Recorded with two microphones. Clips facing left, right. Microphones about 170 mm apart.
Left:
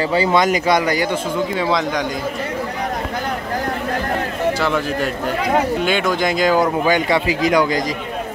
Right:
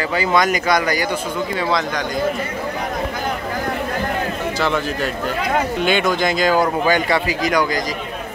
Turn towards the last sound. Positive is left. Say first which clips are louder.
# left 3 dB
turn(degrees=25)  # may be behind; listen again after turning